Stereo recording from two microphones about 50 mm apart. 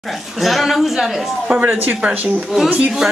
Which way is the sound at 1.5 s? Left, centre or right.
Right.